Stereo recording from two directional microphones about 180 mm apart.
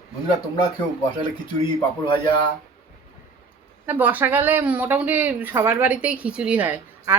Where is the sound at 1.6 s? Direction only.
25° left (ahead or behind).